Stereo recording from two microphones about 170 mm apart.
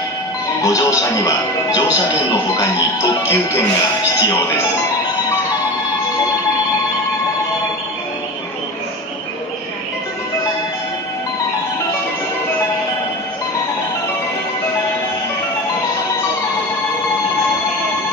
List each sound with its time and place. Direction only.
0.6 s speech: 20° left (ahead or behind)